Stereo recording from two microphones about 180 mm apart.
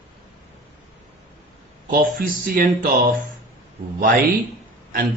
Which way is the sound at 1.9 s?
50° right (ahead or behind).